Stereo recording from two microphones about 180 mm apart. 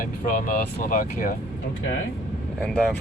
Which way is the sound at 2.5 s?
5° left (ahead or behind).